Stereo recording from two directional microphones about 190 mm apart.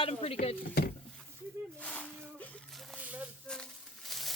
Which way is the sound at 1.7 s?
5° left (ahead or behind).